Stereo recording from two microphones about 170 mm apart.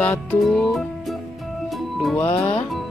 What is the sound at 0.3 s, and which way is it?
Music, centre (ahead or behind).